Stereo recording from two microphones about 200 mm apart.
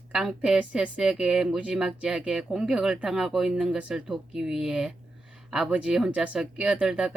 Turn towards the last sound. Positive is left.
turn(degrees=-5)  # may be behind; listen again after turning